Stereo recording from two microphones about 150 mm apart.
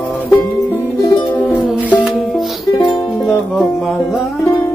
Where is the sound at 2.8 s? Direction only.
25° left (ahead or behind).